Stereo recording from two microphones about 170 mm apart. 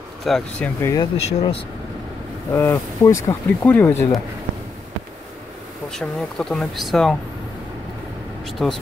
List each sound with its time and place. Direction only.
0.2 s speech: centre (ahead or behind)
0.7 s speech: 15° left (ahead or behind)
1.1 s speech: 35° left (ahead or behind)
2.5 s speech: 15° left (ahead or behind)
5.9 s speech: 5° left (ahead or behind)
8.5 s speech: centre (ahead or behind)